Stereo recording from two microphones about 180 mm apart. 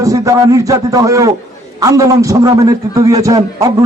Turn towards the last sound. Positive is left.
turn(degrees=-20)  # may be behind; listen again after turning